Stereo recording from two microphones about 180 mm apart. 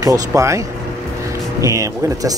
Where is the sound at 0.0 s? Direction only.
15° right (ahead or behind).